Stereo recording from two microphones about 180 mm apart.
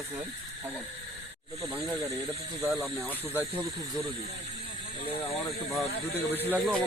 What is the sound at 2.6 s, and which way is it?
Speech, 5° right (ahead or behind).